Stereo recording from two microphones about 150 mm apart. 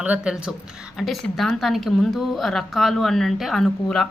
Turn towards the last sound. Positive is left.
turn(degrees=0)  # may be behind; listen again after turning